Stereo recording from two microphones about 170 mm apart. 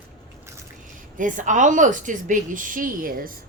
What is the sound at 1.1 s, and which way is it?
A woman's voice, 50° right (ahead or behind).